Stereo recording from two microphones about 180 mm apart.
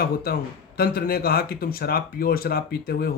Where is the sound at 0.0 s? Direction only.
55° left (ahead or behind).